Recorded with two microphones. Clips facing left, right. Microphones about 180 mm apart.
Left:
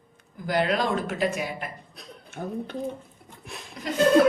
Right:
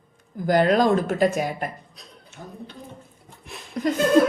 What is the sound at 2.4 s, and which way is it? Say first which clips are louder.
Speech: left 8 dB; 50° left (ahead or behind).